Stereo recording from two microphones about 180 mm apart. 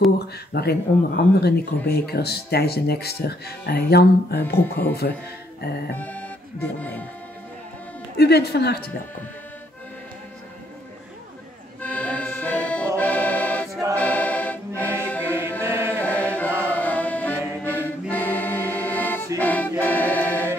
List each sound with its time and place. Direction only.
0.5 s speech: 60° left (ahead or behind)
5.9 s music: 10° left (ahead or behind)
8.2 s speech: 65° left (ahead or behind)
11.8 s accordion: 5° left (ahead or behind)
13.9 s music: 10° left (ahead or behind)
15.2 s chant: 15° right (ahead or behind)
15.9 s music: 10° left (ahead or behind)
19.4 s choir: 10° left (ahead or behind)